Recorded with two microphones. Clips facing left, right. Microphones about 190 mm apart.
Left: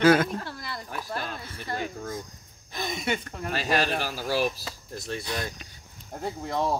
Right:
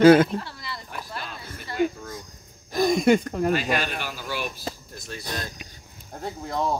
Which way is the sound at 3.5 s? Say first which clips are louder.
Even; 35° left (ahead or behind).